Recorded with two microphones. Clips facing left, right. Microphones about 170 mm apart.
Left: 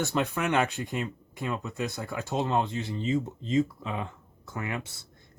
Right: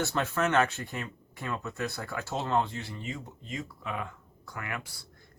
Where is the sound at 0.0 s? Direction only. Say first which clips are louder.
Left 1 dB; 15° left (ahead or behind).